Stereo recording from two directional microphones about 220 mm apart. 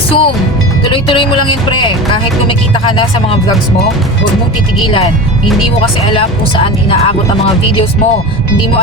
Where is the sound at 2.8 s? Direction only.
20° left (ahead or behind).